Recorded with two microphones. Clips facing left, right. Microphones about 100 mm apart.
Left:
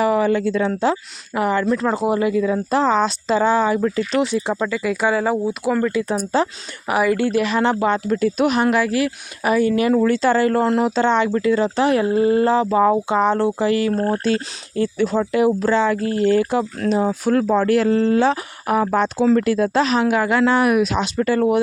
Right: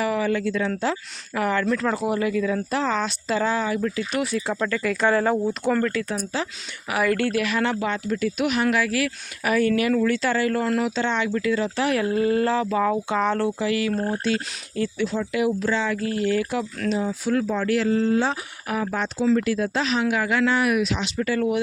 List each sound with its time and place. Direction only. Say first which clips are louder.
0.0 s speech: left 6 dB; 30° left (ahead or behind); by 6.1 s 15° left (ahead or behind)
6.1 s speech: left 8 dB; 35° left (ahead or behind)
7.0 s speech: left 3 dB; 15° left (ahead or behind); by 14.0 s 35° left (ahead or behind)
14.0 s speech: left 5 dB; 50° left (ahead or behind)
14.3 s speech: left 4 dB; 40° left (ahead or behind)
16.9 s speech: left 6 dB; 50° left (ahead or behind)
17.9 s speech: left 5 dB; 75° left (ahead or behind)
18.7 s speech: left 8 dB; 45° left (ahead or behind)